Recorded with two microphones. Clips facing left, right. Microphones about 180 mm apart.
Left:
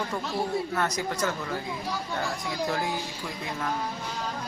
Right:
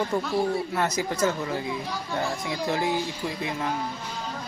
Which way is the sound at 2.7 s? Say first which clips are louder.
Right 5 dB; 25° right (ahead or behind).